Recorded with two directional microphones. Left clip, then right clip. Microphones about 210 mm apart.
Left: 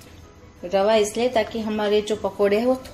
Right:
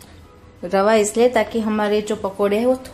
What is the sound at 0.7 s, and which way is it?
Speech, 20° right (ahead or behind).